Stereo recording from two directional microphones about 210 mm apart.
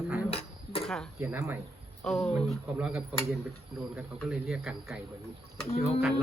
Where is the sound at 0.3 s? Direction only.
25° left (ahead or behind).